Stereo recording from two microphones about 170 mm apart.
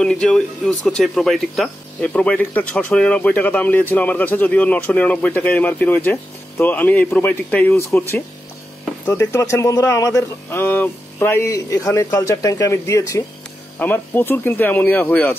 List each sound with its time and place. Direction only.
0.0 s speech: 5° left (ahead or behind)
9.0 s a man's voice: 20° left (ahead or behind)